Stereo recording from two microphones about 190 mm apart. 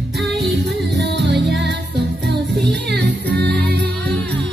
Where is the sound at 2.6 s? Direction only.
60° right (ahead or behind).